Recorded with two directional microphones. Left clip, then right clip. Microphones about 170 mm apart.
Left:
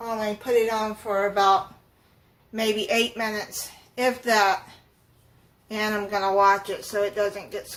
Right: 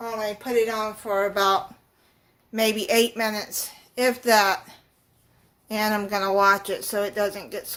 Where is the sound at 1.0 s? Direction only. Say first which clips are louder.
Left 1 dB; 65° right (ahead or behind).